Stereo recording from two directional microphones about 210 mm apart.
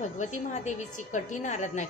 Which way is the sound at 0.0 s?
35° left (ahead or behind).